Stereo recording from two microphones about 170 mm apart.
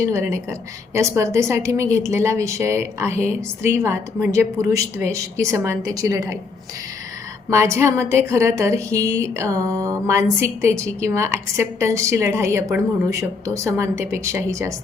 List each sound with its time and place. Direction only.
0.0 s a woman's voice: 15° right (ahead or behind)
7.5 s a woman's voice: 15° right (ahead or behind)